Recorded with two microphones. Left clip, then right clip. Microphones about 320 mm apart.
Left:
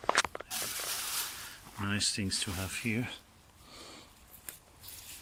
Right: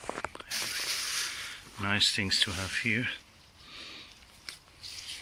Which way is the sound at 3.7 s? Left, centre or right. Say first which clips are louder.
Right 5 dB; left.